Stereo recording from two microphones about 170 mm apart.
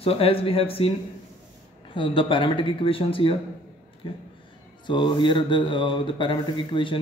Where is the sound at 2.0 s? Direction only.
30° left (ahead or behind).